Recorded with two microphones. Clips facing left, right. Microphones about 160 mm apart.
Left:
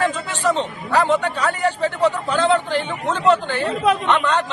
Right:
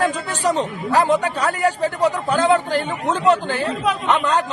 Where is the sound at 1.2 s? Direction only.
40° right (ahead or behind).